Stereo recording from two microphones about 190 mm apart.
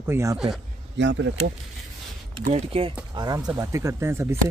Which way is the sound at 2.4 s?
35° right (ahead or behind).